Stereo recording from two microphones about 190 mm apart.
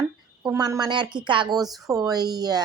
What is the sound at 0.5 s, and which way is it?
Speech, 20° right (ahead or behind).